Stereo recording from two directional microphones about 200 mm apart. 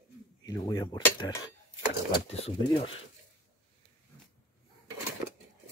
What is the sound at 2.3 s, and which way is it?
Cutlery, 30° left (ahead or behind).